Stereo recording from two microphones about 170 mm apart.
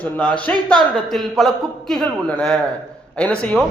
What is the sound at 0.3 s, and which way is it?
A man's voice, 10° left (ahead or behind).